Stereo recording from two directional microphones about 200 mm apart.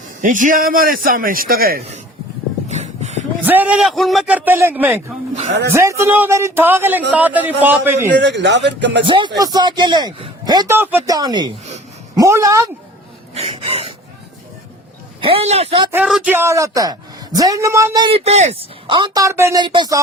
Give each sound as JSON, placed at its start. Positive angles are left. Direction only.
{"t": 0.2, "sound": "a man's voice", "side_deg": -40}
{"t": 2.6, "sound": "a sound", "side_deg": -35}
{"t": 3.4, "sound": "speech", "side_deg": -10}
{"t": 8.1, "sound": "speech", "side_deg": -60}
{"t": 9.0, "sound": "a man's voice", "side_deg": -25}
{"t": 13.3, "sound": "speech", "side_deg": -30}
{"t": 15.2, "sound": "a man's voice", "side_deg": -30}
{"t": 15.9, "sound": "speech", "side_deg": -5}